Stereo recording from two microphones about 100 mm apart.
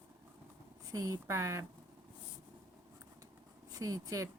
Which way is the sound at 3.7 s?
35° right (ahead or behind).